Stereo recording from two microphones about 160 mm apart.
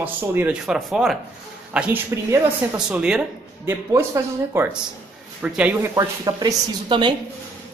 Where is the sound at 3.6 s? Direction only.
15° right (ahead or behind).